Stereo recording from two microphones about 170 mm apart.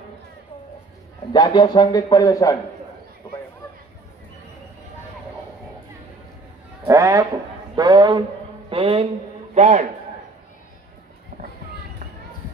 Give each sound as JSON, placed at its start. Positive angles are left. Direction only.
{"t": 1.3, "sound": "speech", "side_deg": 25}
{"t": 6.9, "sound": "speech", "side_deg": -20}
{"t": 7.7, "sound": "a sound", "side_deg": -25}
{"t": 9.5, "sound": "a man's voice", "side_deg": -45}